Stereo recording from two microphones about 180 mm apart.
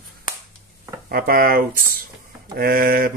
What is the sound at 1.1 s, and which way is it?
Speech, 55° right (ahead or behind).